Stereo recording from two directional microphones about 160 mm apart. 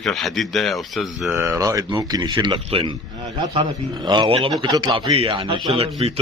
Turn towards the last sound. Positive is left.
turn(degrees=-35)  # may be behind; listen again after turning